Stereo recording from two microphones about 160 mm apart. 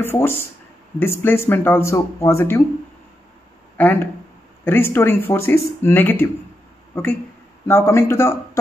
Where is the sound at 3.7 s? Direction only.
10° left (ahead or behind).